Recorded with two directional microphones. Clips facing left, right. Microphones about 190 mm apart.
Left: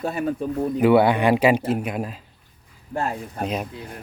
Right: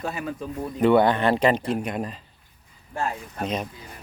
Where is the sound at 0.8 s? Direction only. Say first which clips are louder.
Left 1 dB; 5° left (ahead or behind).